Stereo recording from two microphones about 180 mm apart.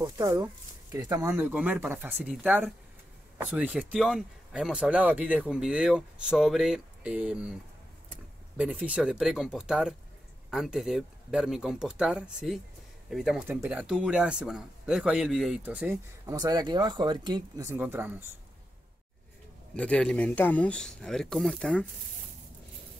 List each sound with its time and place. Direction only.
0.0 s speech: 20° right (ahead or behind)
8.5 s speech: 10° right (ahead or behind)
19.7 s speech: 5° left (ahead or behind)